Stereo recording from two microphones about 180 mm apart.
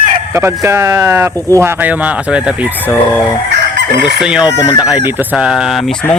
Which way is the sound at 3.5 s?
75° right (ahead or behind).